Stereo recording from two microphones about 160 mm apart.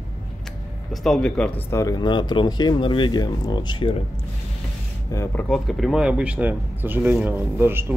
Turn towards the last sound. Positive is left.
turn(degrees=-15)  # may be behind; listen again after turning